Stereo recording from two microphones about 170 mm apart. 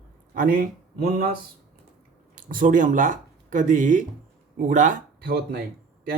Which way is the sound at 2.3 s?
55° right (ahead or behind).